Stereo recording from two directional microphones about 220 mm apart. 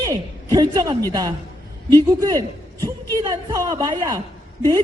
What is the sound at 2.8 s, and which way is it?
A man's voice, 15° right (ahead or behind).